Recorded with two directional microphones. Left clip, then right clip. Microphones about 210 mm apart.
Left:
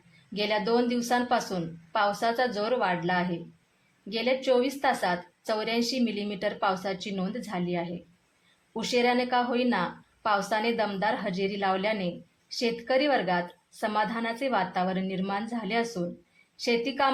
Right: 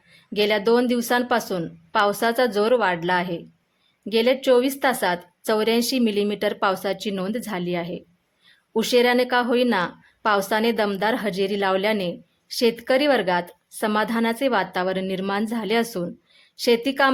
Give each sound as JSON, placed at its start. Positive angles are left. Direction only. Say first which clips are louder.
{"t": 0.3, "sound": "a woman's voice", "louder": "right 7 dB", "side_deg": -45}